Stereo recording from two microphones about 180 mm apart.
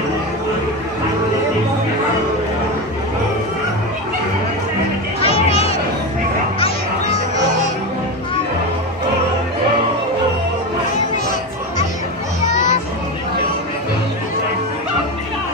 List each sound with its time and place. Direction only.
5.2 s music: 35° left (ahead or behind)